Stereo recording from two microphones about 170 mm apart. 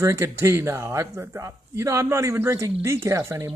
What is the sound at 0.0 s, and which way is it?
Speech, 15° right (ahead or behind).